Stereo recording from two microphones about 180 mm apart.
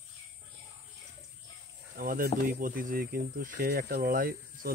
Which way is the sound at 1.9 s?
50° right (ahead or behind).